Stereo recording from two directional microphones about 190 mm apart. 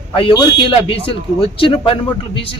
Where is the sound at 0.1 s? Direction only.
25° left (ahead or behind).